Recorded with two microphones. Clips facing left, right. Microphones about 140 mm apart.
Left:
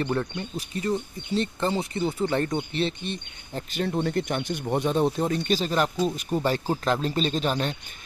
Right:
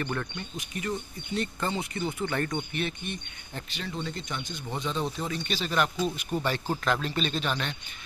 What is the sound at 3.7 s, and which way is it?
Speech, 50° left (ahead or behind).